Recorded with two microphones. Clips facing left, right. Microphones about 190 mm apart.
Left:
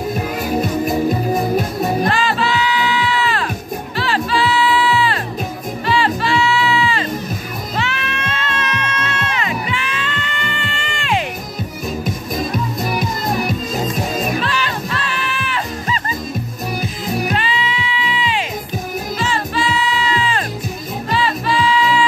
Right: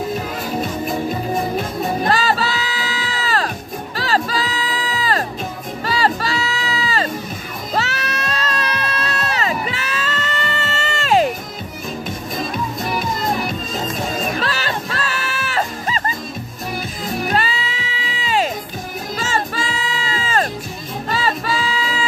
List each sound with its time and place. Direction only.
2.0 s music: 40° right (ahead or behind)
14.4 s music: 40° right (ahead or behind)
17.3 s music: 40° right (ahead or behind)